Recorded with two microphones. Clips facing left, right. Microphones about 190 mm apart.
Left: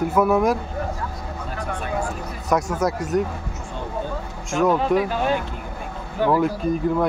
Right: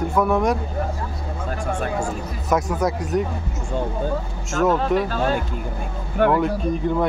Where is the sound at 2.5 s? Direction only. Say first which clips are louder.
Even; centre (ahead or behind).